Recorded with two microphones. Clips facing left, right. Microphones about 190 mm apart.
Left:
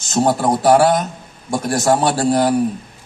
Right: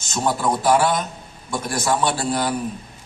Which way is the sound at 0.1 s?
45° left (ahead or behind).